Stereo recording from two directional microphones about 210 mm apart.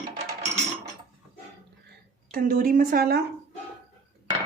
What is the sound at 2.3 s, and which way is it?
Speech, 40° right (ahead or behind).